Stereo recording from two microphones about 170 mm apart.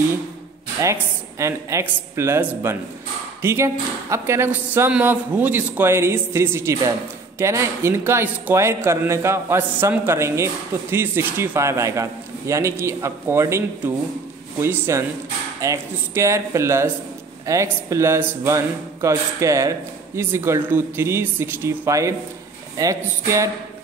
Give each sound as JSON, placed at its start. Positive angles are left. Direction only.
{"t": 1.4, "sound": "speech", "side_deg": -15}